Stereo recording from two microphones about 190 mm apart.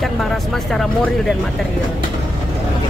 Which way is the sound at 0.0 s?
Centre (ahead or behind).